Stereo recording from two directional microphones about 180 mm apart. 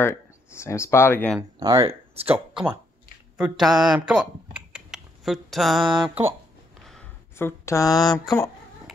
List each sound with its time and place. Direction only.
0.7 s speech: 15° left (ahead or behind)
1.6 s speech: 25° right (ahead or behind)
3.3 s speech: 5° right (ahead or behind)
4.1 s typing: 5° right (ahead or behind)
6.8 s a sound: centre (ahead or behind)
7.3 s speech: 15° left (ahead or behind)